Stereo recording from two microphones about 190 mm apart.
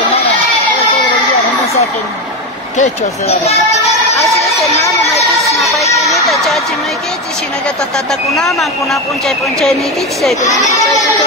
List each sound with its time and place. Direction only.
2.8 s speech: 35° left (ahead or behind)
6.0 s a sound: centre (ahead or behind)
8.1 s speech: centre (ahead or behind)
10.4 s speech: 15° left (ahead or behind)